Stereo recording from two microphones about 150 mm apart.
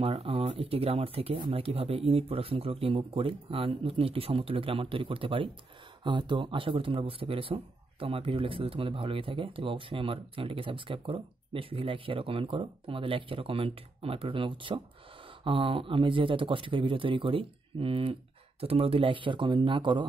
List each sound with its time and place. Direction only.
0.0 s speech: 40° right (ahead or behind)